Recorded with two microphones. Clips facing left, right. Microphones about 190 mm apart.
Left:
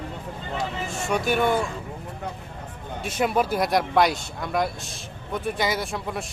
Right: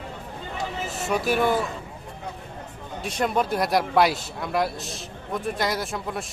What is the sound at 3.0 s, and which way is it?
Speech, 5° left (ahead or behind).